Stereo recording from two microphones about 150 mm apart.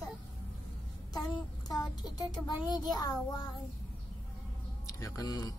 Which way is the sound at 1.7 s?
25° left (ahead or behind).